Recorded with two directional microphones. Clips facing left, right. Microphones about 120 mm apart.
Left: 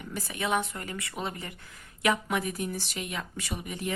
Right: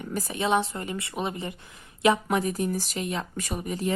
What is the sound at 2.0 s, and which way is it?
Speech, 35° right (ahead or behind).